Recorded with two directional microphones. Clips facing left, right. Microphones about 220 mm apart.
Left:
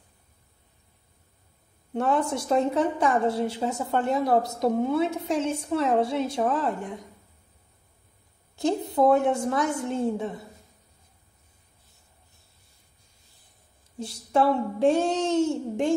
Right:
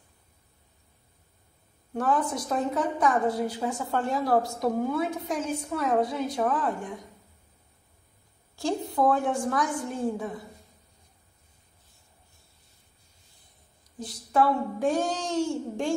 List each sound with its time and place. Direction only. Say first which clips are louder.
2.0 s a woman's voice: left 2 dB; 25° left (ahead or behind)
8.5 s a woman's voice: left 3 dB; 20° left (ahead or behind)
13.9 s a woman's voice: left 1 dB; 25° left (ahead or behind)